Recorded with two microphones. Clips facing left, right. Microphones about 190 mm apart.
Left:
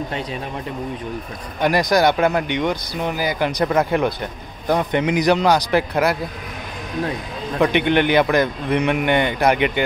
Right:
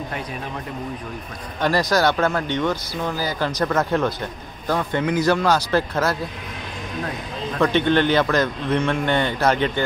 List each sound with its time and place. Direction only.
1.6 s speech: 15° left (ahead or behind)
7.5 s speech: 15° left (ahead or behind)